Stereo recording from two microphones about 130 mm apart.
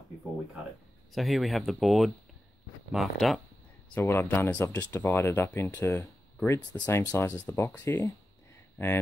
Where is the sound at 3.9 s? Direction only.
20° left (ahead or behind).